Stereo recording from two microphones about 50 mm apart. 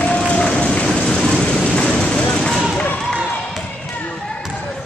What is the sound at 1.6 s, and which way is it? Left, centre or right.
Vehicle, left.